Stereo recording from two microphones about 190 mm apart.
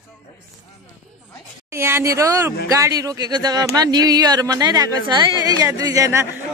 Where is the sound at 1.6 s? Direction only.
15° right (ahead or behind).